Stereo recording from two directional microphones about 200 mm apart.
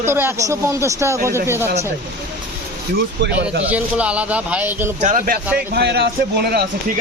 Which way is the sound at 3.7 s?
5° right (ahead or behind).